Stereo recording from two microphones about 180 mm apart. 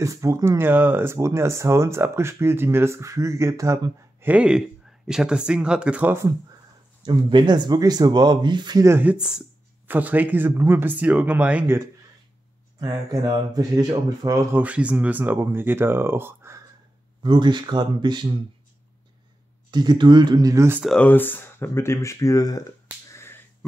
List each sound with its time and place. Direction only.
0.0 s speech: 15° right (ahead or behind)
7.0 s speech: 25° right (ahead or behind)
14.6 s speech: 5° right (ahead or behind)
17.2 s speech: 25° right (ahead or behind)
19.7 s speech: 25° right (ahead or behind)
20.8 s speech: 5° left (ahead or behind)
23.1 s a sound: 15° left (ahead or behind)